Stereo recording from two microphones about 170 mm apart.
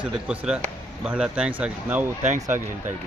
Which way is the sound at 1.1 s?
5° right (ahead or behind).